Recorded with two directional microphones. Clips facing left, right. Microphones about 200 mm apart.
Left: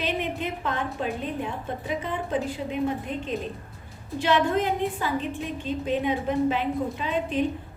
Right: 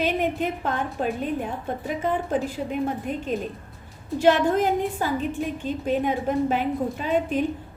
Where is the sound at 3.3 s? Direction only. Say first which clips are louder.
Right 3 dB; 50° right (ahead or behind).